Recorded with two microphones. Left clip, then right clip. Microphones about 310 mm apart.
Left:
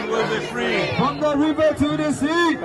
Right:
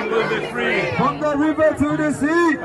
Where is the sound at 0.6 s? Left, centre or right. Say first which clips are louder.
Right 2 dB; centre.